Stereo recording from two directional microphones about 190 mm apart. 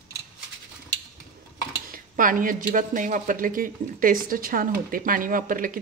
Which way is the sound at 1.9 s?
45° right (ahead or behind).